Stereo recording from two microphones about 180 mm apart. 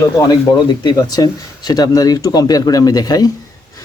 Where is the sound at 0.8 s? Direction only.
20° left (ahead or behind).